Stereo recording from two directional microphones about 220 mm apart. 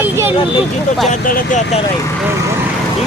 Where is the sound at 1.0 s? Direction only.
35° left (ahead or behind).